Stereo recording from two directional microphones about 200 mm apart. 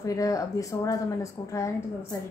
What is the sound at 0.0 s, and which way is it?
Speech, 15° left (ahead or behind).